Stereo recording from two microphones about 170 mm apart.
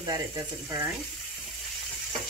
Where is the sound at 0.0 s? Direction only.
20° right (ahead or behind).